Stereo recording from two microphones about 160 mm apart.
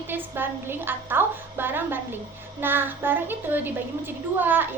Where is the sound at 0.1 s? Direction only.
15° right (ahead or behind).